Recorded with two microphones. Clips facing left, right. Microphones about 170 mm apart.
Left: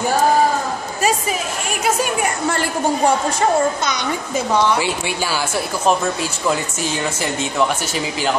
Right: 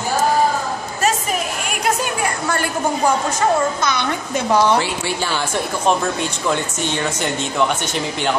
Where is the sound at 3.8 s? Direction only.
15° left (ahead or behind).